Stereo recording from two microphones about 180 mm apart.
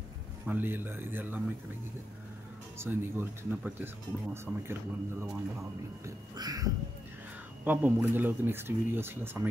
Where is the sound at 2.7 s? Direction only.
15° right (ahead or behind).